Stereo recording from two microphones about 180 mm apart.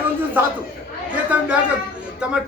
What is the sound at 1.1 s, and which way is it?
A man's voice, 10° right (ahead or behind).